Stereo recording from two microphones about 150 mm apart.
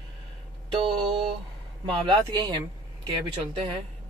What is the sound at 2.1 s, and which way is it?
Speech, 25° right (ahead or behind).